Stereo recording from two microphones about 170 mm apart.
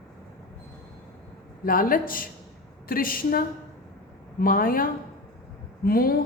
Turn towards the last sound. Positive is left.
turn(degrees=60)  # may be behind; listen again after turning